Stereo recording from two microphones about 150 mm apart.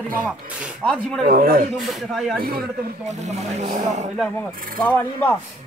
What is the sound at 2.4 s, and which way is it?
Speech, 80° right.